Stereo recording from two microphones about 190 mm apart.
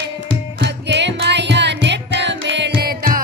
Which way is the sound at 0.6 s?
65° right (ahead or behind).